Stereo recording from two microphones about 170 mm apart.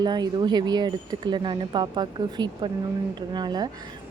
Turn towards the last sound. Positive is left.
turn(degrees=-25)  # may be behind; listen again after turning